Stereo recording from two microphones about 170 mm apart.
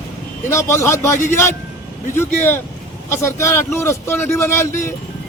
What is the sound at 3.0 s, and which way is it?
Speech, 15° left (ahead or behind).